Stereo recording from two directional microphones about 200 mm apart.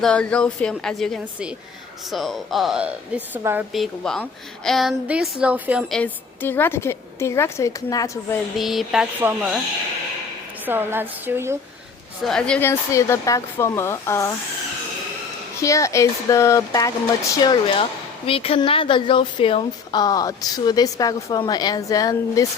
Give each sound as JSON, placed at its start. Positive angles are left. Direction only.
{"t": 0.0, "sound": "a woman's voice", "side_deg": 5}
{"t": 5.9, "sound": "a woman's voice", "side_deg": 10}
{"t": 8.5, "sound": "a woman's voice", "side_deg": 0}
{"t": 10.7, "sound": "a woman's voice", "side_deg": -10}
{"t": 12.2, "sound": "a woman's voice", "side_deg": 5}
{"t": 15.6, "sound": "a woman's voice", "side_deg": 15}